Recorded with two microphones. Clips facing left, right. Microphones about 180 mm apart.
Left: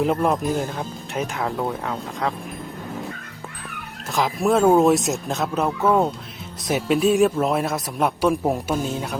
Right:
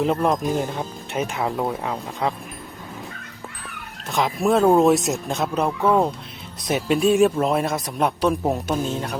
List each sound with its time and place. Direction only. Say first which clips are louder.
0.0 s a man's voice: even; 5° left (ahead or behind)
4.1 s a man's voice: even; centre (ahead or behind)